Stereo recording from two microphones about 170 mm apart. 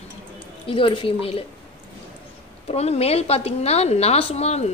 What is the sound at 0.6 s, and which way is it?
Speech, 30° left (ahead or behind).